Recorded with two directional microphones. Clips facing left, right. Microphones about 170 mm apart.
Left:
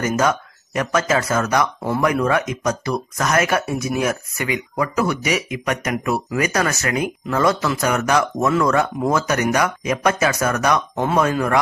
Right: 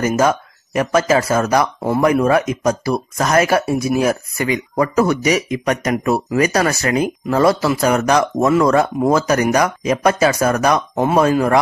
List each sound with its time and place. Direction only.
0.0 s speech: 30° right (ahead or behind)